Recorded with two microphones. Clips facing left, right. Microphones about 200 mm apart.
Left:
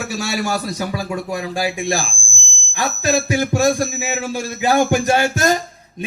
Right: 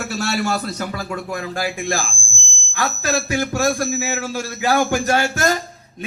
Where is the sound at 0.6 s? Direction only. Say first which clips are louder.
Left 2 dB; 15° left (ahead or behind).